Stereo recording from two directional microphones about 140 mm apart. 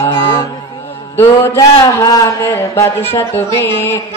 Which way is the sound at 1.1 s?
15° left (ahead or behind).